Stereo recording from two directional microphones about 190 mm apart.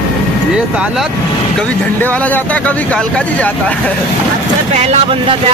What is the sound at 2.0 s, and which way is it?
Speech, 10° left (ahead or behind).